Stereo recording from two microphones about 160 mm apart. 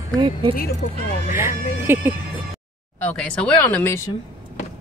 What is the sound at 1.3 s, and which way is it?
Speech, 15° right (ahead or behind).